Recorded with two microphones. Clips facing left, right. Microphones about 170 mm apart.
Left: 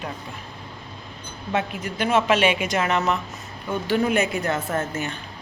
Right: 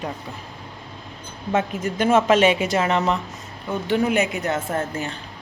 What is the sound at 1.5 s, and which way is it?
A woman's voice, 45° right (ahead or behind).